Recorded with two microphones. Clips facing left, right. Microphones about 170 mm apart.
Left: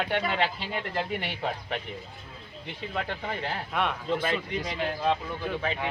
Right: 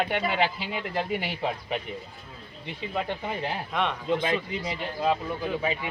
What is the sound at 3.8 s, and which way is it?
Speech, 5° left (ahead or behind).